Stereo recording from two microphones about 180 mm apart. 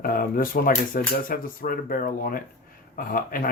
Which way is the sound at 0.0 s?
50° left (ahead or behind).